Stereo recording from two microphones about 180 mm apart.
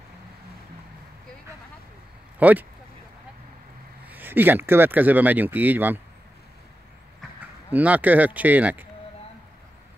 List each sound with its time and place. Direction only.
2.3 s speech: 10° right (ahead or behind)
4.0 s speech: 10° right (ahead or behind)
7.7 s speech: 10° right (ahead or behind)